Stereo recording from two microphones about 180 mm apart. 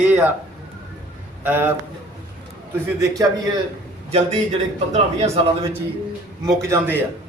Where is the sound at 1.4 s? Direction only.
10° right (ahead or behind).